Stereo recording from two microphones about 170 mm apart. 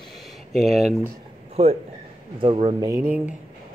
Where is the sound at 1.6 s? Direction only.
35° right (ahead or behind).